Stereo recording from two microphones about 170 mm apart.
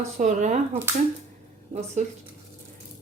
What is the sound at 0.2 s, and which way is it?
Speech, 45° right (ahead or behind).